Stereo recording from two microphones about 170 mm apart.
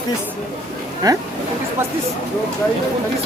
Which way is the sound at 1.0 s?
20° right (ahead or behind).